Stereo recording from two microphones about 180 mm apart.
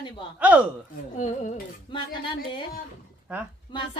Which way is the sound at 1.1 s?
40° left (ahead or behind).